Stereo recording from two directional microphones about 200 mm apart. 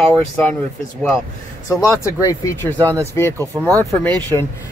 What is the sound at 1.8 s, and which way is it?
Speech, 15° left (ahead or behind).